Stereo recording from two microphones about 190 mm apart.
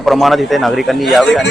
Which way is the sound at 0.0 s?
Centre (ahead or behind).